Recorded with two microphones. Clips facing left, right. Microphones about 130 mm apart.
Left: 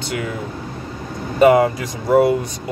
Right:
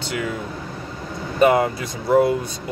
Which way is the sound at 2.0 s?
15° left (ahead or behind).